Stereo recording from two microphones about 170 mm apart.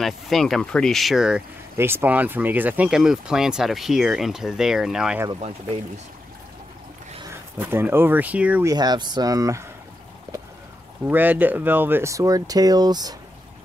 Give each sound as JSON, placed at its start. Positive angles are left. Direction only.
{"t": 0.0, "sound": "speech", "side_deg": 0}
{"t": 7.5, "sound": "speech", "side_deg": -10}
{"t": 8.6, "sound": "speech", "side_deg": -25}
{"t": 11.1, "sound": "speech", "side_deg": -10}